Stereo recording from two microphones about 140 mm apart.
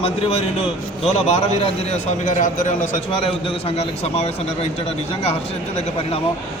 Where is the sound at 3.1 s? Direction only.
40° left (ahead or behind).